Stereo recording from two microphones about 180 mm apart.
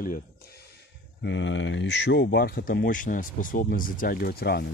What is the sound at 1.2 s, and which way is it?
Speech, 90° left.